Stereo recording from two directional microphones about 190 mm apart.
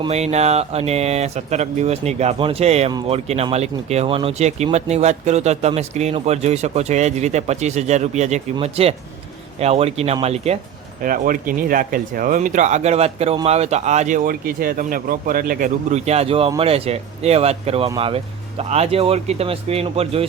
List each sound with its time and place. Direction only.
0.0 s speech: 35° right (ahead or behind)
11.0 s speech: 50° right (ahead or behind); by 20.2 s 30° right (ahead or behind)